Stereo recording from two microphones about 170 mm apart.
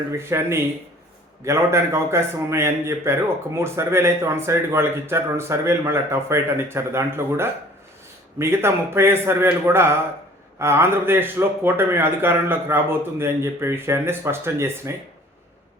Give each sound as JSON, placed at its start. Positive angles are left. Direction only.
{"t": 0.1, "sound": "a man's voice", "side_deg": -15}